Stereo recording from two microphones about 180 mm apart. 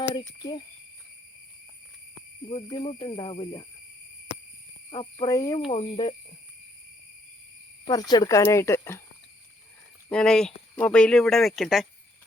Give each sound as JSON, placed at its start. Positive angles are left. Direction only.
{"t": 0.1, "sound": "speech", "side_deg": 25}
{"t": 2.5, "sound": "speech", "side_deg": 25}
{"t": 4.9, "sound": "speech", "side_deg": 25}
{"t": 5.5, "sound": "speech", "side_deg": 30}
{"t": 7.9, "sound": "speech", "side_deg": 20}
{"t": 10.1, "sound": "speech", "side_deg": 5}